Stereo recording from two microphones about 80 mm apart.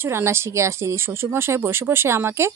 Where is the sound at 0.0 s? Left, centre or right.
Right.